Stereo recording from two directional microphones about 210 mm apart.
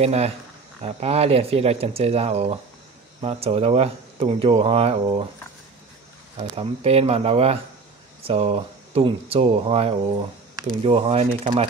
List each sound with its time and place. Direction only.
0.0 s speech: 30° right (ahead or behind)
6.3 s speech: 25° right (ahead or behind)